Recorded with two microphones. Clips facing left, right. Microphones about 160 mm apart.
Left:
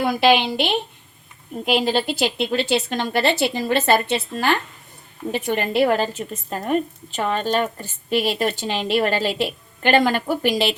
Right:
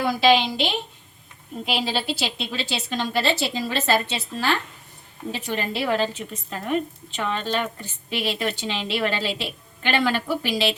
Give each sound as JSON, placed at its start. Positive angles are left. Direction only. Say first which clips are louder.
{"t": 0.0, "sound": "a woman's voice", "louder": "left 2 dB", "side_deg": 55}